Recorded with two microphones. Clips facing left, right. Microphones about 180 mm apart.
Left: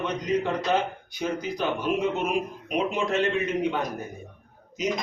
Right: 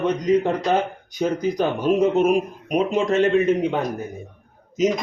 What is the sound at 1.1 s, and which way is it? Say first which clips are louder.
A man's voice: right 8 dB; 40° right (ahead or behind).